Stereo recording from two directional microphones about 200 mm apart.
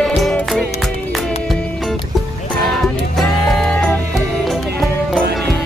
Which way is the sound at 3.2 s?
Centre (ahead or behind).